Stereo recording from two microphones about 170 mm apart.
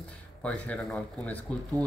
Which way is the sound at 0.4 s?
5° left (ahead or behind).